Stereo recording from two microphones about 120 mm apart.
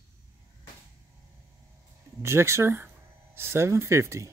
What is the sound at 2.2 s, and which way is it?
Speech, 20° right (ahead or behind).